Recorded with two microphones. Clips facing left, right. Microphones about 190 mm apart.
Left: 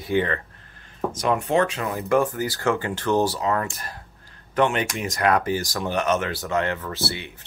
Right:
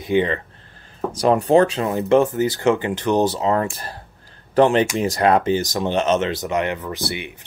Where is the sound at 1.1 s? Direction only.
35° right (ahead or behind).